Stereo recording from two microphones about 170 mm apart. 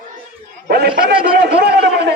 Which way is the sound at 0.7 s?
65° right (ahead or behind).